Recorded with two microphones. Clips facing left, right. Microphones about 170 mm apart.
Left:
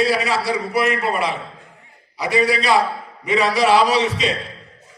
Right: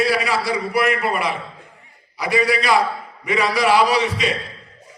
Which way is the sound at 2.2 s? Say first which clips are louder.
Left 1 dB; 30° left (ahead or behind).